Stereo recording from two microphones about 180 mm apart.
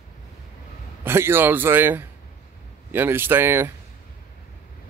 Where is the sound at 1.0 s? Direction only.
15° right (ahead or behind).